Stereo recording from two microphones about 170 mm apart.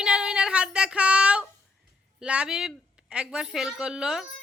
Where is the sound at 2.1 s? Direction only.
5° right (ahead or behind).